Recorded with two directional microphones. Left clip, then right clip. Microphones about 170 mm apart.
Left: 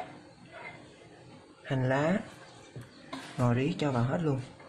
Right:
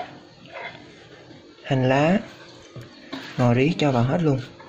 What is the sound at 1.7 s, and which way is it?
Speech, 25° right (ahead or behind).